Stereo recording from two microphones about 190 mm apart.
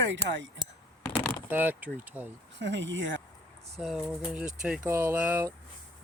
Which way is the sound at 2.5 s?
70° right (ahead or behind).